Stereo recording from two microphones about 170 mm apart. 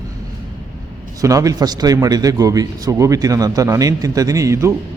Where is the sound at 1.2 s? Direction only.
20° right (ahead or behind).